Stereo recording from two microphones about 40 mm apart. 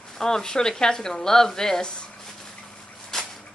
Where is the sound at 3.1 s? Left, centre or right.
Centre.